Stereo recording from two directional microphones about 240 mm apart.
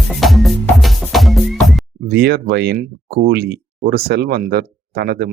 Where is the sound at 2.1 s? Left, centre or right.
Right.